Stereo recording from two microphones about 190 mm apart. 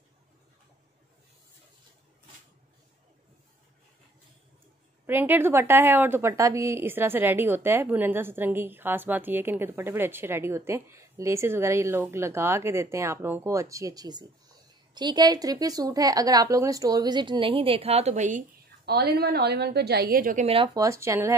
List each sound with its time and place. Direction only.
5.0 s a woman's voice: 10° right (ahead or behind); by 18.4 s 40° right (ahead or behind)
18.9 s a woman's voice: 55° right (ahead or behind)
20.4 s a woman's voice: 25° right (ahead or behind)